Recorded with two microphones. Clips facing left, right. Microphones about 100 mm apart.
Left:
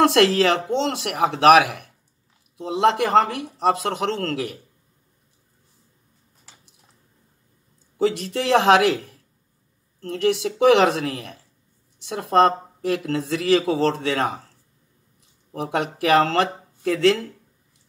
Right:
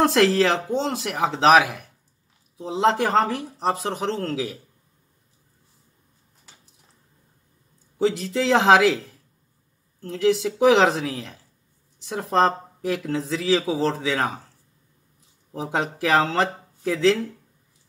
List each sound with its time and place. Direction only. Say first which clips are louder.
0.0 s speech: left 2 dB; 75° left (ahead or behind)
8.1 s speech: even; 70° left (ahead or behind)
15.5 s speech: left 1 dB; 70° left (ahead or behind)